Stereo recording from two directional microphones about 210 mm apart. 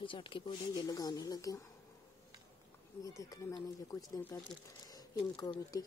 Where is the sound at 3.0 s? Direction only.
15° left (ahead or behind).